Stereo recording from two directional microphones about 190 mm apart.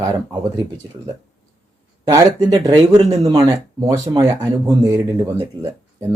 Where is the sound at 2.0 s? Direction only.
20° right (ahead or behind).